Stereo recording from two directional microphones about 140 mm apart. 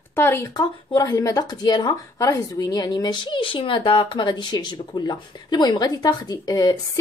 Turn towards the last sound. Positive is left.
turn(degrees=25)  # may be behind; listen again after turning